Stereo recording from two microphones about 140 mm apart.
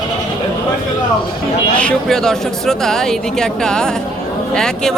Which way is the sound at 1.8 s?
5° left (ahead or behind).